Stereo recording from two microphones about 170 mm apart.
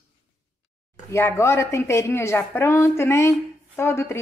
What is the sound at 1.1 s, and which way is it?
A woman's voice, 15° left (ahead or behind).